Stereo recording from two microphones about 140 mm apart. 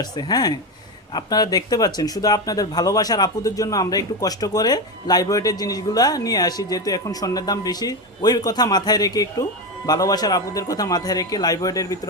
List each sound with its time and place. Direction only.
0.0 s speech: 30° left (ahead or behind)